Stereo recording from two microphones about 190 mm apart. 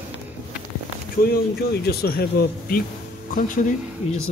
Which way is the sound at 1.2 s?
55° left (ahead or behind).